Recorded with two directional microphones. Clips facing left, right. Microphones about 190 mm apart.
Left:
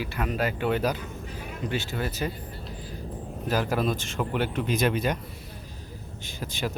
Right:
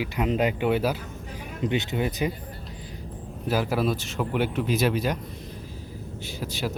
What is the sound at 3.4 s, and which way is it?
Speech, 10° right (ahead or behind).